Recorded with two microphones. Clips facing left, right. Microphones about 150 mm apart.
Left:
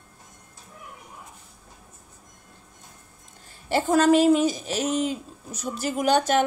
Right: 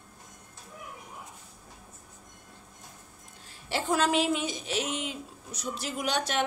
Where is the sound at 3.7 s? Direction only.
45° left (ahead or behind).